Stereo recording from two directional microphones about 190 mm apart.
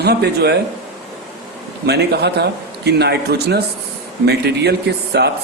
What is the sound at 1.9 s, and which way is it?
Speech, 60° right (ahead or behind).